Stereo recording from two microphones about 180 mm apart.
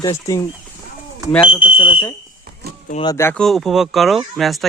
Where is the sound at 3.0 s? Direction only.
15° left (ahead or behind).